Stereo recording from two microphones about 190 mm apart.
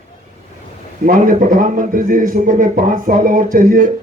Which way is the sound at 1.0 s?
45° right (ahead or behind).